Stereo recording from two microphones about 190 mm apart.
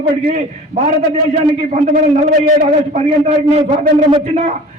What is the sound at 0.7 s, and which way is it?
Speech, 40° right (ahead or behind).